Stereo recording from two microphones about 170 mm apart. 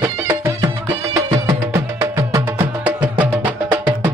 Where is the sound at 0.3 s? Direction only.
15° right (ahead or behind).